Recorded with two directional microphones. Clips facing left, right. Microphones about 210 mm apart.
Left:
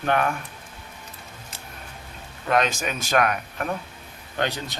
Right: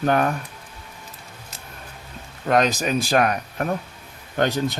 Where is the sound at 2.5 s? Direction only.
40° right (ahead or behind).